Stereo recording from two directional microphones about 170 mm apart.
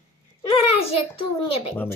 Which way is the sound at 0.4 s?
35° left (ahead or behind).